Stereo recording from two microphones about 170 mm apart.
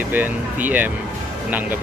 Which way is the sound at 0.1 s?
10° right (ahead or behind).